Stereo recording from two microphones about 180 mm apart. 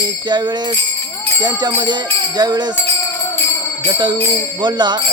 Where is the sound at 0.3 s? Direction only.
25° right (ahead or behind).